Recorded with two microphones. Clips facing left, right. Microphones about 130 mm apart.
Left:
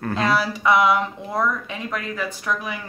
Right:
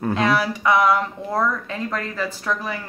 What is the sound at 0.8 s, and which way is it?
Speech, centre (ahead or behind).